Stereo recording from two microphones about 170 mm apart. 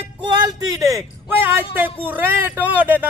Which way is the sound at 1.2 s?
10° right (ahead or behind).